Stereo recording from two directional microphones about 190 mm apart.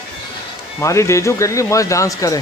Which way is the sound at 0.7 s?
15° left (ahead or behind).